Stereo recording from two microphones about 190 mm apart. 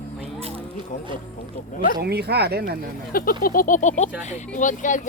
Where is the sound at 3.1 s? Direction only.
50° left (ahead or behind).